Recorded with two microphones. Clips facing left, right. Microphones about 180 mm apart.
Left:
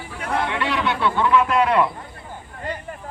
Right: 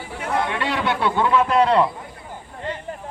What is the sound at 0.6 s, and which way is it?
Speech, 40° right (ahead or behind).